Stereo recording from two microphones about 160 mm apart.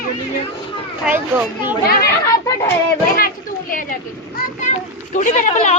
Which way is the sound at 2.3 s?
20° left (ahead or behind).